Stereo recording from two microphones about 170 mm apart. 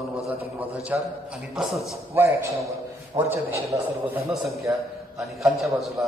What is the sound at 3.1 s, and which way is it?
A man's voice, 20° right (ahead or behind).